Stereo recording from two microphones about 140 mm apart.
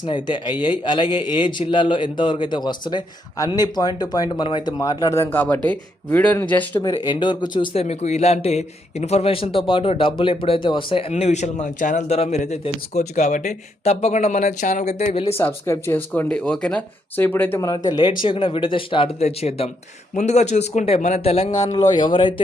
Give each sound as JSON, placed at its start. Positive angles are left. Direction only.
{"t": 0.1, "sound": "a man's voice", "side_deg": 30}
{"t": 6.8, "sound": "a man's voice", "side_deg": 30}
{"t": 7.8, "sound": "a man's voice", "side_deg": 50}
{"t": 11.1, "sound": "a man's voice", "side_deg": 55}
{"t": 15.4, "sound": "speech", "side_deg": 20}
{"t": 17.7, "sound": "a man's voice", "side_deg": 30}
{"t": 21.5, "sound": "a man's voice", "side_deg": 30}